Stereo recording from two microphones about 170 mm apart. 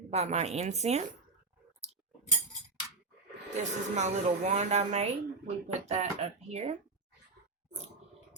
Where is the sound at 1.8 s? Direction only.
40° right (ahead or behind).